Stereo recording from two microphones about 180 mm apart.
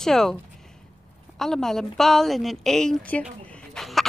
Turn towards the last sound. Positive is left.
turn(degrees=0)  # may be behind; listen again after turning